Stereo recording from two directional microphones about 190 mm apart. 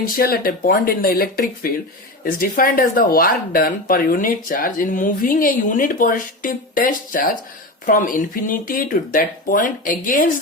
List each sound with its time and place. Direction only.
0.2 s speech: 50° left (ahead or behind)